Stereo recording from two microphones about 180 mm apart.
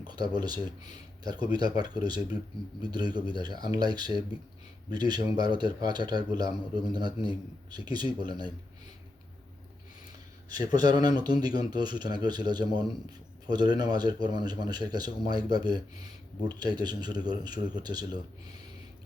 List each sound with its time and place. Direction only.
0.0 s speech: 25° right (ahead or behind)
10.8 s speech: 20° right (ahead or behind)